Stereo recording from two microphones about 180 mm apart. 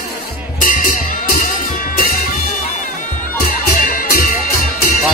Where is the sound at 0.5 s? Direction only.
50° left (ahead or behind).